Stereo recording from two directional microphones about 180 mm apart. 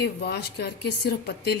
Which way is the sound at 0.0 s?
60° left (ahead or behind).